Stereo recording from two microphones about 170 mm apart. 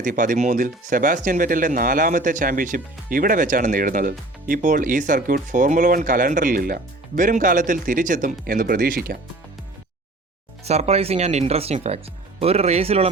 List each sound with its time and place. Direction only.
0.0 s speech: 50° right (ahead or behind)
10.6 s speech: 40° right (ahead or behind)